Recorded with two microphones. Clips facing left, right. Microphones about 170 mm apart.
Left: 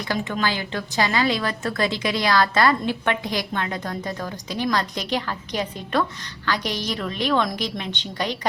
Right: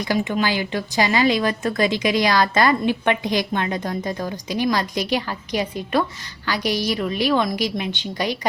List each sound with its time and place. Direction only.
0.0 s a woman's voice: 15° right (ahead or behind)